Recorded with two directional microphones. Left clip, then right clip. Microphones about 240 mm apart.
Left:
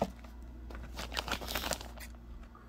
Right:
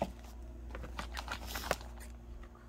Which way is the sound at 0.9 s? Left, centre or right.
Left.